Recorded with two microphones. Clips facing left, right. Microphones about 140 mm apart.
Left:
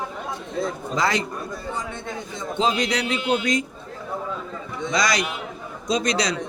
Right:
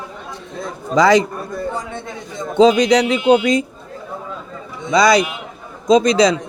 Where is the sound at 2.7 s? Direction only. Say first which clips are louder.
Right 10 dB; 90° right.